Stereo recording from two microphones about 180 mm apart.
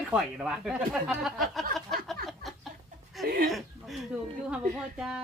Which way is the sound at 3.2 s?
Centre (ahead or behind).